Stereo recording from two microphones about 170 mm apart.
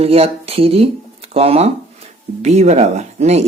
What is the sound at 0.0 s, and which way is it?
Speech, 35° right (ahead or behind).